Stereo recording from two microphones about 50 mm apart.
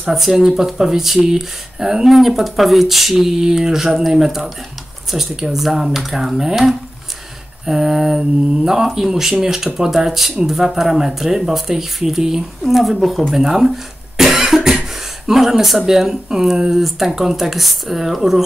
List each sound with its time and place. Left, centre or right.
0.1 s speech: centre
14.1 s cough: centre
15.2 s speech: centre